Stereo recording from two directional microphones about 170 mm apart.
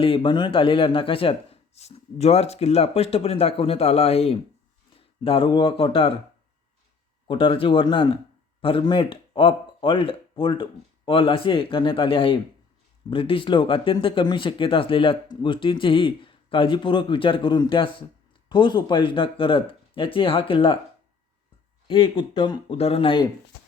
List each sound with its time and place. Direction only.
0.0 s speech: 30° left (ahead or behind)
7.3 s speech: 30° left (ahead or behind)
21.8 s speech: 25° left (ahead or behind)